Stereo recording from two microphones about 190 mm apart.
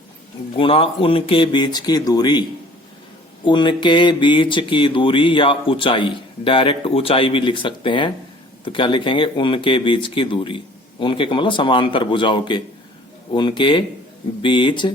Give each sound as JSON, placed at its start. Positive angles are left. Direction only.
{"t": 0.5, "sound": "speech", "side_deg": 30}
{"t": 3.4, "sound": "speech", "side_deg": 25}